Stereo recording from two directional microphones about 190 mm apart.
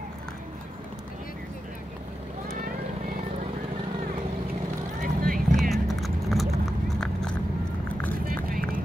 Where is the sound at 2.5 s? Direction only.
45° right (ahead or behind).